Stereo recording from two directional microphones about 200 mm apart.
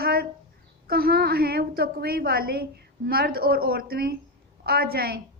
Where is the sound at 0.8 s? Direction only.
50° right (ahead or behind).